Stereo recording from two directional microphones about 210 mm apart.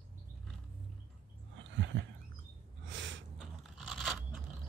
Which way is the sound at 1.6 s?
60° right (ahead or behind).